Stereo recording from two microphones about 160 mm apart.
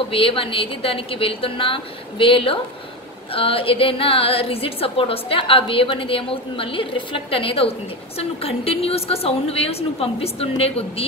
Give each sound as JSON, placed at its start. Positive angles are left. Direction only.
{"t": 0.1, "sound": "a woman's voice", "side_deg": 35}